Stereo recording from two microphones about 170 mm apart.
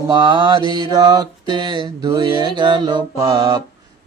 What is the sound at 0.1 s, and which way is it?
Mantra, 25° right (ahead or behind).